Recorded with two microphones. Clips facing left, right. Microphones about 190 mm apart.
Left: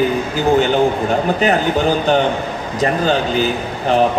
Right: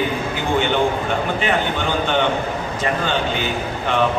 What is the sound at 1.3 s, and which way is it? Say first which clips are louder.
A man's voice: left 5 dB; 40° left (ahead or behind).